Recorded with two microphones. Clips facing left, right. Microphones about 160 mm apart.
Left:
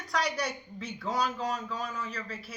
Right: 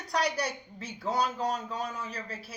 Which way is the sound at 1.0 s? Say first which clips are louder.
Right 2 dB; 25° right (ahead or behind).